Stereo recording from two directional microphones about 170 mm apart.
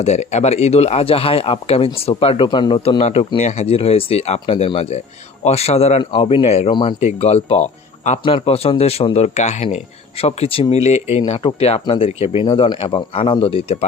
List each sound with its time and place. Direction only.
0.0 s speech: 40° left (ahead or behind)